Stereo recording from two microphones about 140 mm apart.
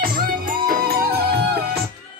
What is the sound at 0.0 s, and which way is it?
Music, 90° right.